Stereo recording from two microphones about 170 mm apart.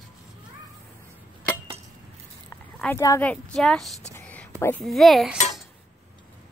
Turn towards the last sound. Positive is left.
turn(degrees=0)  # may be behind; listen again after turning